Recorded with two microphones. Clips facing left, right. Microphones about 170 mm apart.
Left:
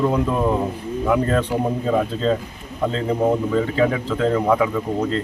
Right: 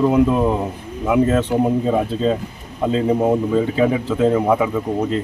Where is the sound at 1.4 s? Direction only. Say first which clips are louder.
Right 4 dB; 20° right (ahead or behind).